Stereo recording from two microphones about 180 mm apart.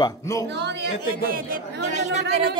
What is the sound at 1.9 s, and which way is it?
Chatter, 40° right (ahead or behind).